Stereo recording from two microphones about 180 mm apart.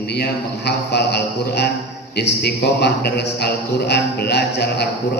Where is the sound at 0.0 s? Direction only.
65° left (ahead or behind).